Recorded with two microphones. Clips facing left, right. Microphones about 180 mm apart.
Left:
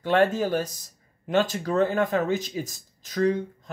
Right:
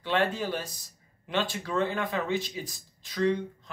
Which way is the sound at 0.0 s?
45° left (ahead or behind).